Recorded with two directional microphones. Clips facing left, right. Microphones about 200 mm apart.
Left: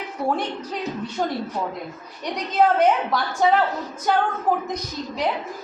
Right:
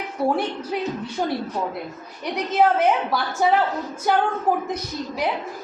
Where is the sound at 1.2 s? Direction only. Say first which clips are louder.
Right 1 dB; 10° right (ahead or behind).